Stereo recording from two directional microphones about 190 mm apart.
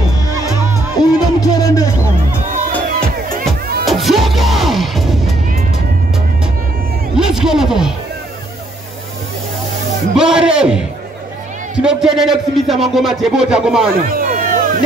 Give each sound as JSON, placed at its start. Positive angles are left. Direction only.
{"t": 0.6, "sound": "music", "side_deg": -15}
{"t": 1.4, "sound": "music", "side_deg": 20}
{"t": 2.5, "sound": "music", "side_deg": -45}
{"t": 3.8, "sound": "music", "side_deg": 0}
{"t": 7.2, "sound": "music", "side_deg": -5}
{"t": 10.1, "sound": "a sound", "side_deg": -5}
{"t": 11.8, "sound": "speech", "side_deg": -5}
{"t": 14.0, "sound": "a sound", "side_deg": -45}